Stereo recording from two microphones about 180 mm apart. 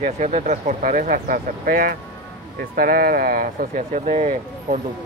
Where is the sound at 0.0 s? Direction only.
40° right (ahead or behind).